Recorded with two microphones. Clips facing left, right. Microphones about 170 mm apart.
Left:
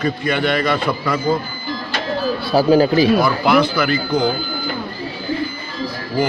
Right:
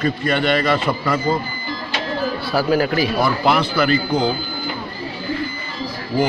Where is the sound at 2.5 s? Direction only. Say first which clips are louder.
Left 5 dB; 25° left (ahead or behind).